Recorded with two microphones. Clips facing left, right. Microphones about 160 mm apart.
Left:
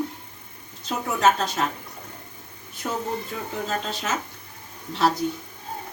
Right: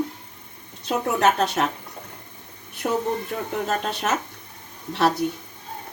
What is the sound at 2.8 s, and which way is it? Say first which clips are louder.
Speech: right 5 dB; 50° right (ahead or behind).